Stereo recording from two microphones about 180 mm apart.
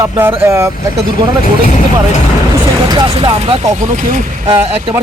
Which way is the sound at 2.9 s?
25° right (ahead or behind).